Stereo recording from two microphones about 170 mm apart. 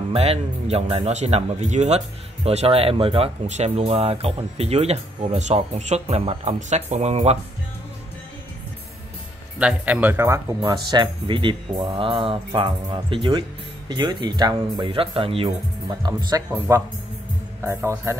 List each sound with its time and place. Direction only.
0.1 s speech: 35° right (ahead or behind)
9.6 s a man's voice: 10° right (ahead or behind)